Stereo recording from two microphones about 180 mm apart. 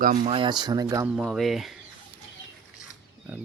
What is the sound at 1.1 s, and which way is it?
Speech, centre (ahead or behind).